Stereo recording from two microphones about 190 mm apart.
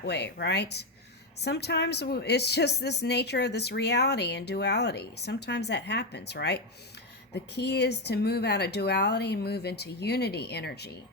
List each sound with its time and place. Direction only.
0.0 s speech: 60° left (ahead or behind)